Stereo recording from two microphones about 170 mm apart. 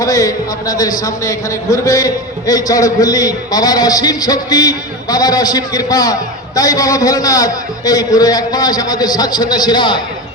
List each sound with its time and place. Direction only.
0.0 s speech: 20° left (ahead or behind)